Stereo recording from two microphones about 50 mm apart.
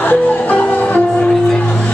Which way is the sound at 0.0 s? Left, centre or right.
Left.